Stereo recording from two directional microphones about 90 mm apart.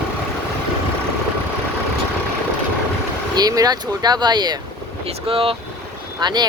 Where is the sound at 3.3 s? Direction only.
45° right (ahead or behind).